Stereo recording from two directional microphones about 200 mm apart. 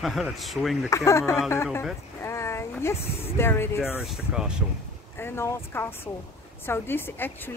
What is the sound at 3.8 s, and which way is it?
Speech, centre (ahead or behind).